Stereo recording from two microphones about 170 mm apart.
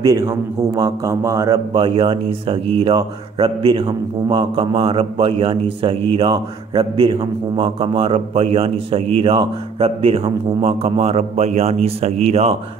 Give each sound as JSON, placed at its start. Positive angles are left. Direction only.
{"t": 0.0, "sound": "a man's voice", "side_deg": -20}